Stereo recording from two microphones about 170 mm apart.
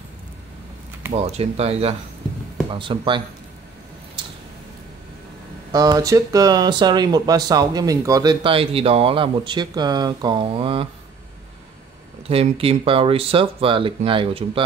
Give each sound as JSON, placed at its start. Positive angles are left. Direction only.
{"t": 1.1, "sound": "speech", "side_deg": -40}
{"t": 5.7, "sound": "speech", "side_deg": -20}
{"t": 12.3, "sound": "speech", "side_deg": -35}